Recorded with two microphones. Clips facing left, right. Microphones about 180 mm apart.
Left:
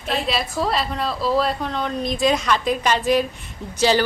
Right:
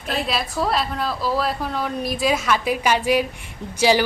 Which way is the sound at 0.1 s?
Centre (ahead or behind).